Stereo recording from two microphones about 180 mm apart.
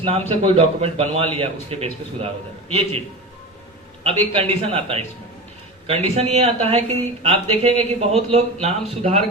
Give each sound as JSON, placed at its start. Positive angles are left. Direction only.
{"t": 0.0, "sound": "speech", "side_deg": -35}
{"t": 4.0, "sound": "speech", "side_deg": -35}